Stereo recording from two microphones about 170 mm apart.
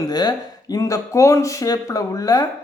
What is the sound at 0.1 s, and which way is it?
Speech, 25° left (ahead or behind).